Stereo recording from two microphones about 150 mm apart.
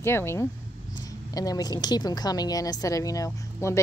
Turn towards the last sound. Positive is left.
turn(degrees=20)  # may be behind; listen again after turning